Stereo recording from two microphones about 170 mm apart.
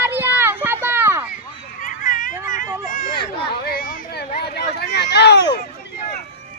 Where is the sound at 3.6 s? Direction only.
55° left (ahead or behind); by 5.5 s 80° left.